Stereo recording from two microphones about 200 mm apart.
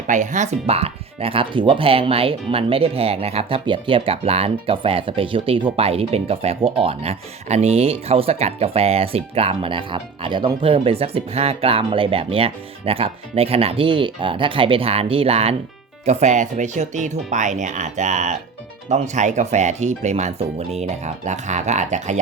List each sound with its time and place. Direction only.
0.1 s speech: 35° right (ahead or behind)